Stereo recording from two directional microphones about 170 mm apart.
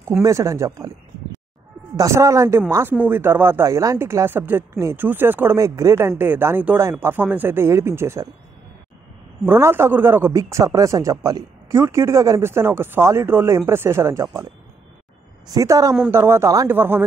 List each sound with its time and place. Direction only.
0.2 s speech: 15° right (ahead or behind)
2.0 s speech: 20° right (ahead or behind)
9.4 s a woman's voice: 15° right (ahead or behind)